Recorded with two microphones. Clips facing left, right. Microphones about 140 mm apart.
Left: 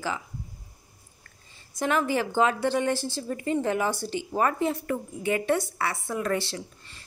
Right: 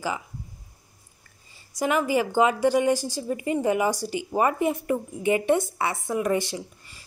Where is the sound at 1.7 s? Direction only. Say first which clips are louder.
Right 2 dB; 10° right (ahead or behind).